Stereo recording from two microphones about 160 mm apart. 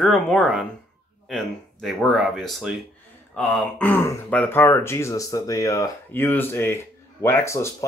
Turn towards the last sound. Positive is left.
turn(degrees=15)  # may be behind; listen again after turning